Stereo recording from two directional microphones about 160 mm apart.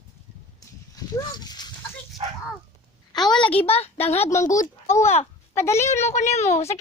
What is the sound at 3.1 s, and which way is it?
A woman's voice, 25° left (ahead or behind).